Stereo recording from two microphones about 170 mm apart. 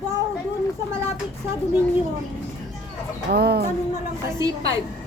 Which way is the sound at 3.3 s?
70° right (ahead or behind).